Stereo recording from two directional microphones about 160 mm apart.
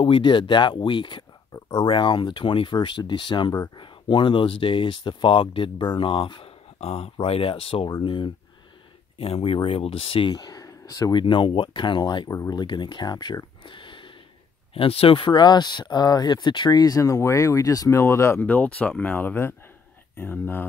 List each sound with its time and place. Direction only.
0.0 s speech: 30° left (ahead or behind); by 20.6 s 10° left (ahead or behind)